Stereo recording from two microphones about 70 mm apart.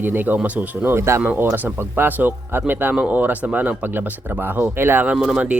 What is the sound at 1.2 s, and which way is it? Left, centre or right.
Speech, right.